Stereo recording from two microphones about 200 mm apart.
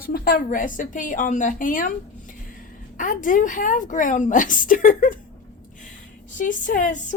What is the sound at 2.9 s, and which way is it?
A woman's voice, 40° left (ahead or behind).